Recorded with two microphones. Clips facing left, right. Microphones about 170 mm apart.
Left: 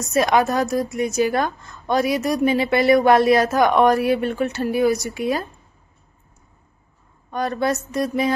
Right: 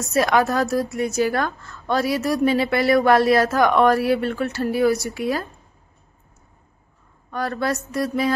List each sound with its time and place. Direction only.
0.0 s a woman's voice: 20° left (ahead or behind)
7.2 s a woman's voice: 20° left (ahead or behind)